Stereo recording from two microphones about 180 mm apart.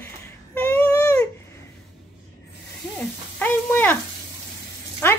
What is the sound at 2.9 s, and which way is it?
Sizzle, 10° left (ahead or behind).